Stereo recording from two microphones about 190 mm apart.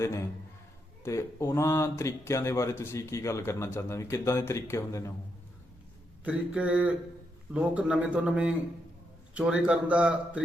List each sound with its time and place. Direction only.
0.0 s speech: 15° left (ahead or behind)
6.2 s a man's voice: 5° right (ahead or behind)